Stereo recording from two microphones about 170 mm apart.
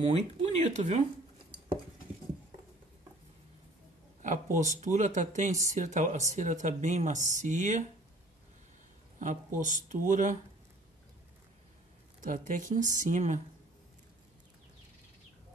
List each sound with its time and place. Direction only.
0.0 s speech: 35° right (ahead or behind)
4.2 s speech: 50° right (ahead or behind)
9.2 s speech: 50° right (ahead or behind)
12.2 s speech: 50° right (ahead or behind)